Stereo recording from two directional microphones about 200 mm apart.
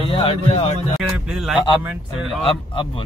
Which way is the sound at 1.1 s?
5° right (ahead or behind).